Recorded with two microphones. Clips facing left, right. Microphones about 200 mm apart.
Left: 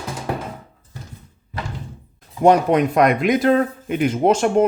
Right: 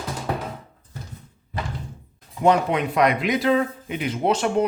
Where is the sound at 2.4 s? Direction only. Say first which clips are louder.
Left 5 dB; 45° left (ahead or behind).